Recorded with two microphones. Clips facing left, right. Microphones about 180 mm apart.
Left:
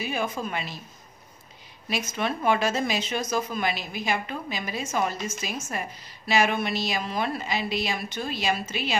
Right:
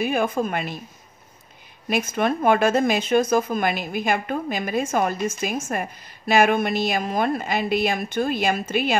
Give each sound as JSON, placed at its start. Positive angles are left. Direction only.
{"t": 0.0, "sound": "speech", "side_deg": -55}
{"t": 1.9, "sound": "speech", "side_deg": -55}